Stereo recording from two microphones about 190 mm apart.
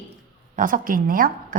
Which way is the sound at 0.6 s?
45° right (ahead or behind).